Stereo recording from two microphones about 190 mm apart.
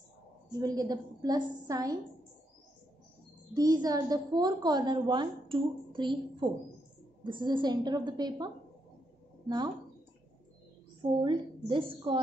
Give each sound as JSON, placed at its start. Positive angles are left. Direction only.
{"t": 0.6, "sound": "a woman's voice", "side_deg": -20}
{"t": 3.5, "sound": "a woman's voice", "side_deg": -20}
{"t": 11.1, "sound": "a woman's voice", "side_deg": -25}